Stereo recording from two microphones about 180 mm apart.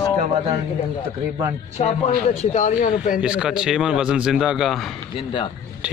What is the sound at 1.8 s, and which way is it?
Speech, 40° left (ahead or behind).